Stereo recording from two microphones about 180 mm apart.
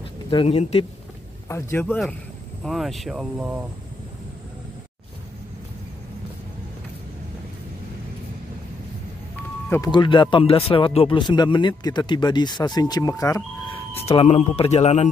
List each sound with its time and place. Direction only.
0.3 s speech: 30° left (ahead or behind)
1.5 s speech: 10° left (ahead or behind); by 3.6 s 5° right (ahead or behind)
9.8 s speech: 25° left (ahead or behind)
13.9 s speech: 35° left (ahead or behind)